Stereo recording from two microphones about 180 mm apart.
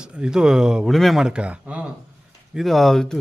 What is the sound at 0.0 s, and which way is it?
A man's voice, 5° right (ahead or behind).